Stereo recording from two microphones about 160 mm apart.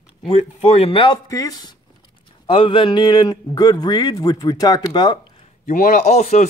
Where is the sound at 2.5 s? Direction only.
35° left (ahead or behind).